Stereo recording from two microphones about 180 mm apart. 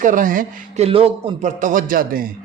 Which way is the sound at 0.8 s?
35° right (ahead or behind).